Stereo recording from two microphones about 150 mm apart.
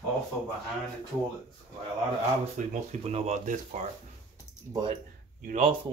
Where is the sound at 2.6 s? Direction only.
60° right (ahead or behind).